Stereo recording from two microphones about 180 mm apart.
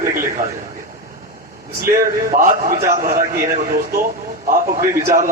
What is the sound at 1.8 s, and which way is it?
A man's voice, 50° right (ahead or behind).